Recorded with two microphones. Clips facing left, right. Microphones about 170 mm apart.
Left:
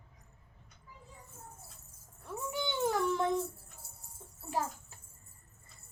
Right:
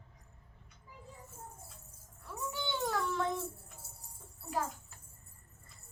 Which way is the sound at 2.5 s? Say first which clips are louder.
Left 4 dB; 20° left (ahead or behind).